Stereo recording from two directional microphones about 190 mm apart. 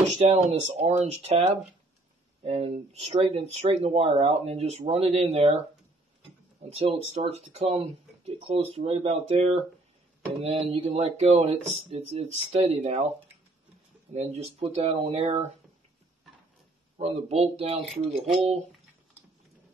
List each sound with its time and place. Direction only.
0.0 s speech: 35° right (ahead or behind)
6.6 s speech: 35° right (ahead or behind)
10.4 s speech: 30° right (ahead or behind)
14.1 s speech: 35° right (ahead or behind)
17.0 s speech: 35° right (ahead or behind)
17.8 s speech: centre (ahead or behind)